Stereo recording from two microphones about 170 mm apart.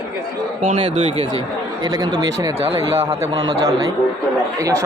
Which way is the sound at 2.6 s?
35° right (ahead or behind).